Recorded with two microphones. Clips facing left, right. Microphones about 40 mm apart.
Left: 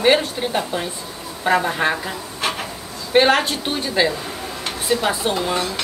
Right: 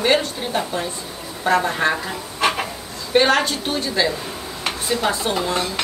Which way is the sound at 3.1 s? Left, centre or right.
Centre.